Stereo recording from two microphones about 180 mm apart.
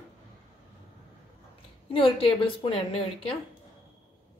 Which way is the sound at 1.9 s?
30° left (ahead or behind).